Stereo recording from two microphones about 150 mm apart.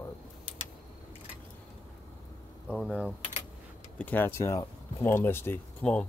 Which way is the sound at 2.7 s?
5° right (ahead or behind).